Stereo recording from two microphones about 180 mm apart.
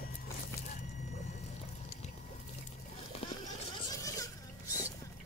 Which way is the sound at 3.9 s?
20° left (ahead or behind).